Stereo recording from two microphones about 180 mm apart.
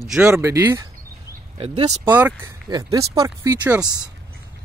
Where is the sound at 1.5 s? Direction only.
35° right (ahead or behind).